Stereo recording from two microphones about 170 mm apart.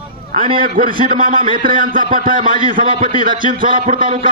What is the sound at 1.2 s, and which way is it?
Speech, 55° right (ahead or behind).